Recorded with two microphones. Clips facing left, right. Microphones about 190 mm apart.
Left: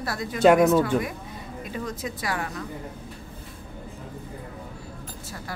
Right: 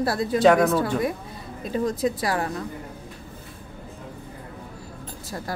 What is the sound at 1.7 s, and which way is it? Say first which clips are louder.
Speech: right 9 dB; 35° right (ahead or behind).